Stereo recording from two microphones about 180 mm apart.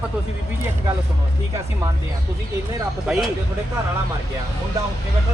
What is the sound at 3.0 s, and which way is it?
Speech, centre (ahead or behind).